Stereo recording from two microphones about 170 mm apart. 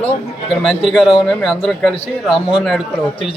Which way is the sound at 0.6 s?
Centre (ahead or behind).